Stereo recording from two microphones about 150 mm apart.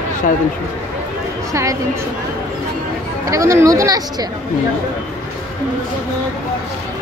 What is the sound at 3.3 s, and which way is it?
Speech, 20° right (ahead or behind).